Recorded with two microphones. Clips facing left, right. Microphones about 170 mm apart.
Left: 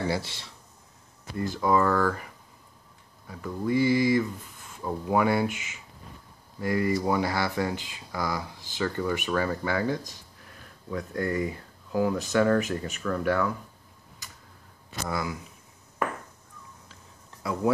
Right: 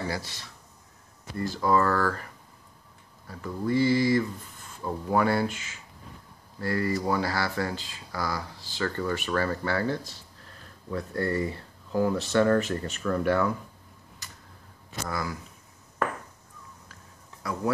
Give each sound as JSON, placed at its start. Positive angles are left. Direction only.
{"t": 0.1, "sound": "speech", "side_deg": 25}
{"t": 3.3, "sound": "speech", "side_deg": 5}
{"t": 15.0, "sound": "speech", "side_deg": 20}